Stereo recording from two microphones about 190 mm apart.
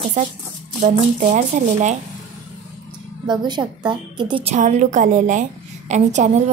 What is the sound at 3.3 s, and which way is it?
Speech, 25° right (ahead or behind).